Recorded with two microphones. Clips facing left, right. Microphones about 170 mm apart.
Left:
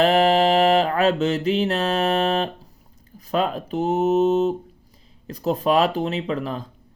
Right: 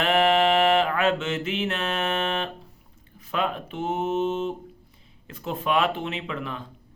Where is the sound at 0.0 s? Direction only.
35° left (ahead or behind).